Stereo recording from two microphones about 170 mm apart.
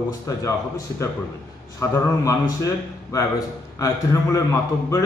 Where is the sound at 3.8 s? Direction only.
20° left (ahead or behind).